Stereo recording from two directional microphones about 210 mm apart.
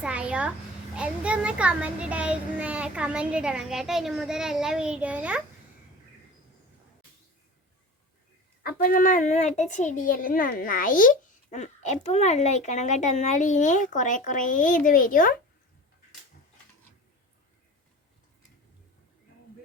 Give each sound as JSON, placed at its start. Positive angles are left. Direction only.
{"t": 0.0, "sound": "a child's voice", "side_deg": -5}
{"t": 8.6, "sound": "a woman's voice", "side_deg": 45}